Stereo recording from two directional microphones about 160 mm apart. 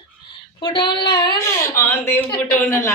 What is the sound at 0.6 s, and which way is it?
Speech, 30° left (ahead or behind).